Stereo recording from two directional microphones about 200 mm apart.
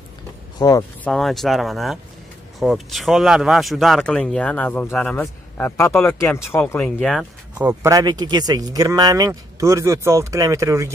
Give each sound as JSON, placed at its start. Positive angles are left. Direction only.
{"t": 0.6, "sound": "speech", "side_deg": 20}
{"t": 1.0, "sound": "speech", "side_deg": 0}
{"t": 7.5, "sound": "speech", "side_deg": -15}